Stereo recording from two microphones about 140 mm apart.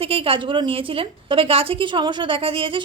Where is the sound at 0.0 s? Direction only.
40° right (ahead or behind).